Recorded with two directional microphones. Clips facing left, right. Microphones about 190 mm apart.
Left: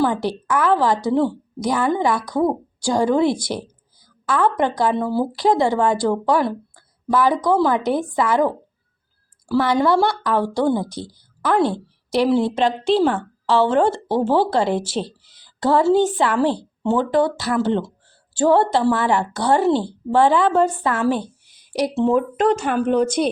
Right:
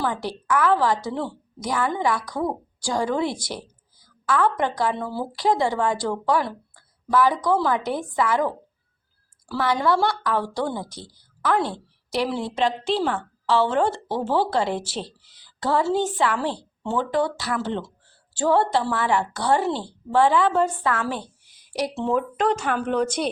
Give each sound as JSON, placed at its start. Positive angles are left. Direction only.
{"t": 0.0, "sound": "a woman's voice", "side_deg": 25}
{"t": 9.6, "sound": "a woman's voice", "side_deg": 20}